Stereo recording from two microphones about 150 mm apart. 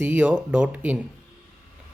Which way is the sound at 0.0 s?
10° right (ahead or behind).